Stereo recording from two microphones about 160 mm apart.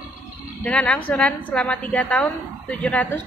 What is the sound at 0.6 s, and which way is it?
A woman's voice, 10° left (ahead or behind).